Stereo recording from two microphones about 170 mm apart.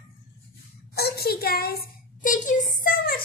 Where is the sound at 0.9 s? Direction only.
65° left (ahead or behind).